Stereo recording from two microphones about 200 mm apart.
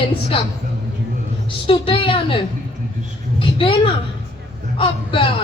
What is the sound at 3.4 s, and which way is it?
A woman's voice, 25° left (ahead or behind).